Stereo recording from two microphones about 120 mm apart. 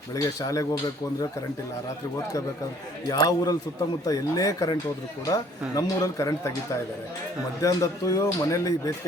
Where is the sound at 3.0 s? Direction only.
30° left (ahead or behind).